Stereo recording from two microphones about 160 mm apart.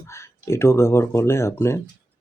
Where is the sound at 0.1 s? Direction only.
15° left (ahead or behind).